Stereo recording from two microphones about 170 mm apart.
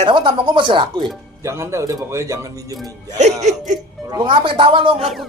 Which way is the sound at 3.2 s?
40° right (ahead or behind).